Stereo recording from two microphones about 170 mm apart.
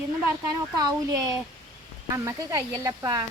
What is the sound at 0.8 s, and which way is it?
Speech, 20° right (ahead or behind).